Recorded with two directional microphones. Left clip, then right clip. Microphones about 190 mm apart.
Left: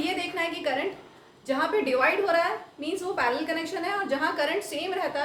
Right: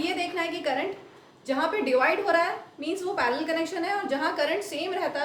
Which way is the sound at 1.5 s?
15° right (ahead or behind).